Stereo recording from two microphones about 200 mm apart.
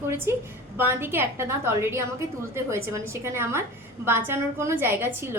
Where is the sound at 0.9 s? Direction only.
10° right (ahead or behind).